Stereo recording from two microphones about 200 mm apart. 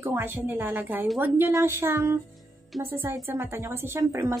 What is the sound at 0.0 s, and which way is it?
A woman's voice, 10° right (ahead or behind).